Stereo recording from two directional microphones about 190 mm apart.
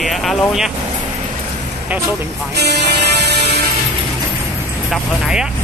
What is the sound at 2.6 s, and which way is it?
Music, 60° right (ahead or behind).